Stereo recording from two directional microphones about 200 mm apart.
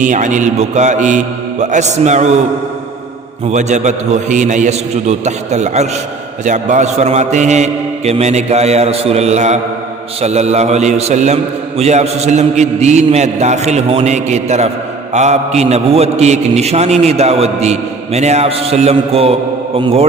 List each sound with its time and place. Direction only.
0.0 s a man's voice: 40° right (ahead or behind)
3.5 s a man's voice: 35° right (ahead or behind)